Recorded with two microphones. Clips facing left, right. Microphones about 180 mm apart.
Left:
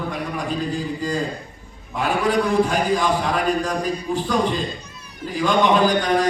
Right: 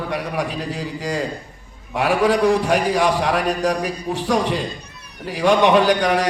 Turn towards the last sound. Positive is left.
turn(degrees=-75)  # may be behind; listen again after turning